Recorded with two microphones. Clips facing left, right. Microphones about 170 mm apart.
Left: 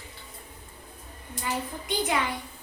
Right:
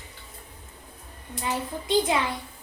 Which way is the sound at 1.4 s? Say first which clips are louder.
Right 2 dB; 25° right (ahead or behind).